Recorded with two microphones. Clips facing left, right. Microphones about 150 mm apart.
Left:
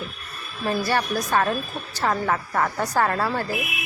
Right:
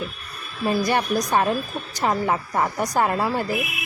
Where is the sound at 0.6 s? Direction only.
15° right (ahead or behind).